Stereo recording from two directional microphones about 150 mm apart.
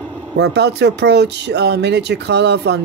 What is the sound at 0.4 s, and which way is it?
Speech, 90° right.